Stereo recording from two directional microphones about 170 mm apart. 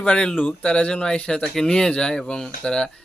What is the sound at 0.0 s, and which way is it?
Speech, 5° left (ahead or behind).